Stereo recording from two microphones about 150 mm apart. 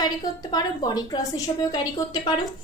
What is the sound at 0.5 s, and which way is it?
A woman's voice, 25° left (ahead or behind).